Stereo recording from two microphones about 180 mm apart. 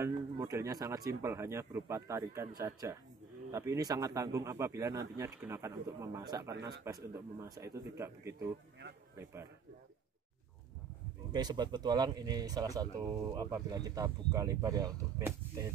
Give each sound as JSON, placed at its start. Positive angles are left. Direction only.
{"t": 0.4, "sound": "a man's voice", "side_deg": -15}
{"t": 11.3, "sound": "a man's voice", "side_deg": -25}